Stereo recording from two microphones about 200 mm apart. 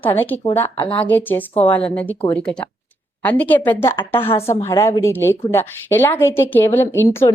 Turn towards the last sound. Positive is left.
turn(degrees=10)  # may be behind; listen again after turning